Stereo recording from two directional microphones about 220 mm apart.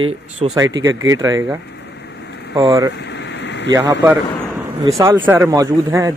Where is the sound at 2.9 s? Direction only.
50° left (ahead or behind).